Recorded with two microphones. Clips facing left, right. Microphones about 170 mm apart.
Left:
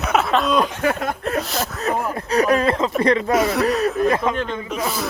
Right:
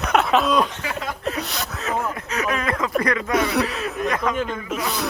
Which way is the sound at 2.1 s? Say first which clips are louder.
Left 7 dB; 35° left (ahead or behind).